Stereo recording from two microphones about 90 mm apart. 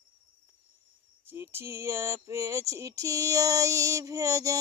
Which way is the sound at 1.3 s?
25° right (ahead or behind).